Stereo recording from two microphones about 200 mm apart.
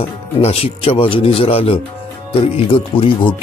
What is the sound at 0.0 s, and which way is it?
Speech, 30° left (ahead or behind).